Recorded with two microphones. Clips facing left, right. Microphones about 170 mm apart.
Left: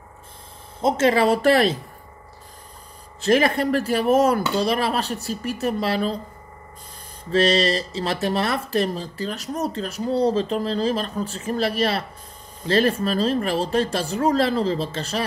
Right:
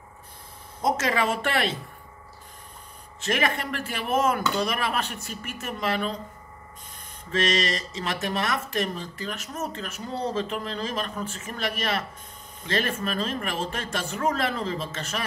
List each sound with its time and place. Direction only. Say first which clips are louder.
0.7 s speech: left 6 dB; 30° left (ahead or behind)
3.2 s speech: left 8 dB; 35° left (ahead or behind)
7.2 s speech: left 7 dB; 35° left (ahead or behind)